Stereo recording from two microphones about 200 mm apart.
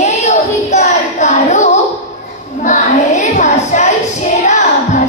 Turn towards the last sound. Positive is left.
turn(degrees=40)  # may be behind; listen again after turning